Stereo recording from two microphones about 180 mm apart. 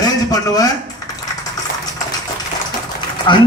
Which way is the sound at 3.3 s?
25° left (ahead or behind).